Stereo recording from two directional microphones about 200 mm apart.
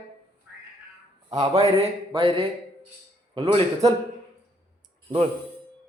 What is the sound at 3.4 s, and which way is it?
Speech, 30° right (ahead or behind).